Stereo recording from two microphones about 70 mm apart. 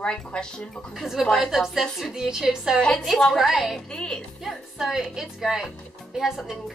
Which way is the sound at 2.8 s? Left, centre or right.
Centre.